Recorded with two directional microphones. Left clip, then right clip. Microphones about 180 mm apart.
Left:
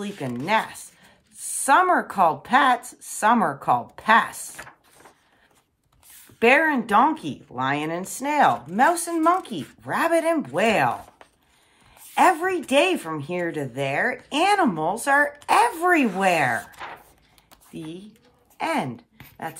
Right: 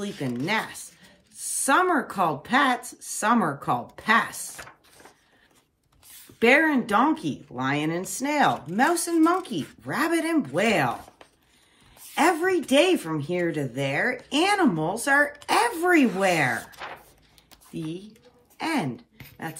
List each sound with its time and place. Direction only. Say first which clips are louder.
0.2 s speech: left 4 dB; 40° left (ahead or behind)
4.4 s speech: left 1 dB; centre (ahead or behind)
6.4 s speech: left 2 dB; 35° left (ahead or behind)
12.1 s speech: left 3 dB; 40° left (ahead or behind)
13.4 s speech: even; 50° left (ahead or behind)
13.7 s speech: left 3 dB; 35° left (ahead or behind)
17.5 s a sound: right 2 dB; 35° left (ahead or behind)
18.6 s speech: left 3 dB; 35° left (ahead or behind)